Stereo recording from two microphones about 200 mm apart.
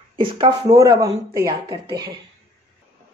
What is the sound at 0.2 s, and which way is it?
Speech, 25° right (ahead or behind).